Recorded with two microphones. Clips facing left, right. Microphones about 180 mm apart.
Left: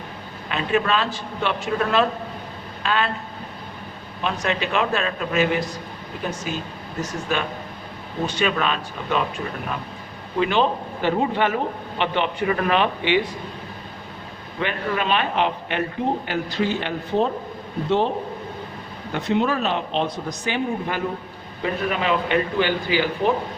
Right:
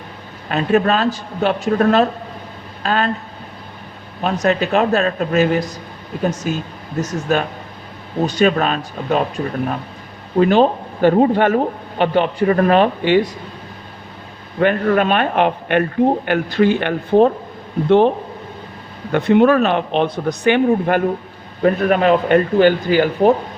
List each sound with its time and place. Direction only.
0.4 s speech: 45° right (ahead or behind)
4.2 s speech: 45° right (ahead or behind)
10.3 s speech: 45° right (ahead or behind)
14.6 s speech: 50° right (ahead or behind)
19.1 s speech: 60° right (ahead or behind)